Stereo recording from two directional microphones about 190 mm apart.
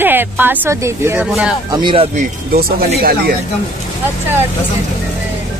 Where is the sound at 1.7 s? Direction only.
25° right (ahead or behind).